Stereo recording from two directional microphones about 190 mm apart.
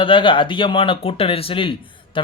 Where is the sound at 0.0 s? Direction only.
25° left (ahead or behind).